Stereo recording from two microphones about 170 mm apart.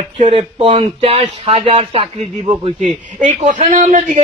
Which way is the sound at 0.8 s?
35° right (ahead or behind).